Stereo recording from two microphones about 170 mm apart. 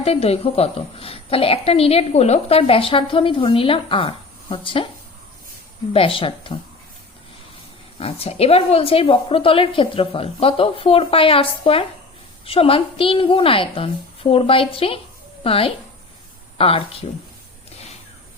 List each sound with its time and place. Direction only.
0.0 s a woman's voice: 35° left (ahead or behind)
5.9 s a woman's voice: 35° left (ahead or behind)
7.9 s a woman's voice: 35° left (ahead or behind)